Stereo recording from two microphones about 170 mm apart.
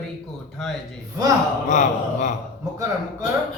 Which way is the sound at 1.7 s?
45° left (ahead or behind).